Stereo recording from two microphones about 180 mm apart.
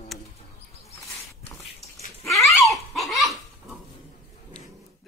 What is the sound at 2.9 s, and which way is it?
Dog, centre (ahead or behind).